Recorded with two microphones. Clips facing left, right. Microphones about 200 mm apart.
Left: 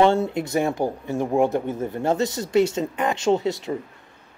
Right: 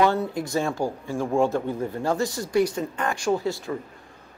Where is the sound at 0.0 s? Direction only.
25° left (ahead or behind).